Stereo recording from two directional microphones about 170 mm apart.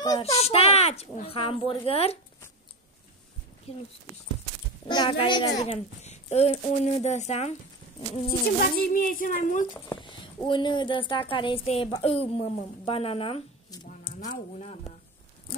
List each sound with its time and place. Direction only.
0.2 s a child's voice: 35° left (ahead or behind)
3.7 s a child's voice: 35° left (ahead or behind)
4.8 s a child's voice: 25° left (ahead or behind)
8.3 s speech: 60° left (ahead or behind)
10.0 s a woman's voice: 30° left (ahead or behind)
13.8 s a sound: 50° left (ahead or behind)